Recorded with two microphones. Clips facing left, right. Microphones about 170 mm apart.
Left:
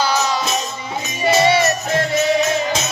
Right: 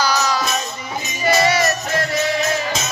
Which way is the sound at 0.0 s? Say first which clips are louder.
Left 1 dB; 25° left (ahead or behind).